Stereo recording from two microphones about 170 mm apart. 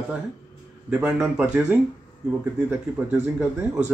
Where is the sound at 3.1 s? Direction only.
10° right (ahead or behind).